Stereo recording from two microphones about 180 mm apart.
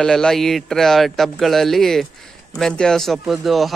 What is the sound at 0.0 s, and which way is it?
Speech, centre (ahead or behind).